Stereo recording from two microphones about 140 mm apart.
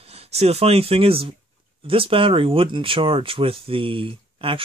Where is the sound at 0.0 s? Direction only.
45° right (ahead or behind).